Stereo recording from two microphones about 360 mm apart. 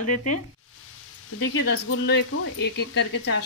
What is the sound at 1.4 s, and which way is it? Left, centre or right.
Speech, left.